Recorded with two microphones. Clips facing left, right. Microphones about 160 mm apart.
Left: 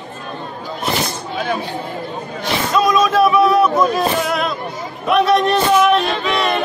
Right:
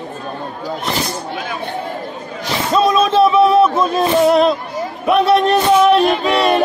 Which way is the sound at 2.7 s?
30° right (ahead or behind).